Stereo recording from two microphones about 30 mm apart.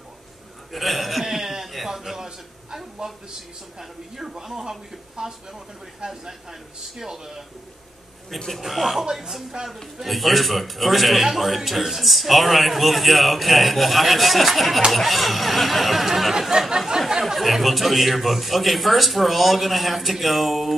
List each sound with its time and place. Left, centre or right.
0.7 s chuckle: centre
1.9 s a sound: centre
3.0 s speech: right
4.2 s speech: centre
6.0 s speech: right
7.0 s speech: centre
8.5 s speech: centre
9.6 s speech: right
10.0 s speech: centre